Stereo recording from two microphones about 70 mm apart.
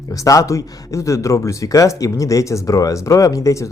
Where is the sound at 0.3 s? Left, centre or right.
Left.